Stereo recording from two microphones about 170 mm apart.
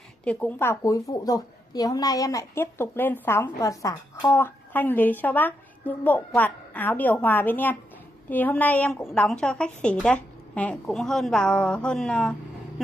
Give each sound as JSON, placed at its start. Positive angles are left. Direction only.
{"t": 0.2, "sound": "a woman's voice", "side_deg": 10}